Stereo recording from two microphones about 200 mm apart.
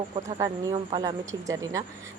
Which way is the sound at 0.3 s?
20° right (ahead or behind).